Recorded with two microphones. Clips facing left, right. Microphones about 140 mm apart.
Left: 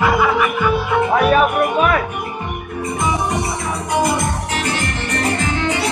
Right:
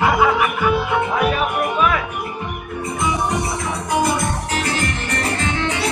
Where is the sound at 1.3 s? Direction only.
50° left (ahead or behind).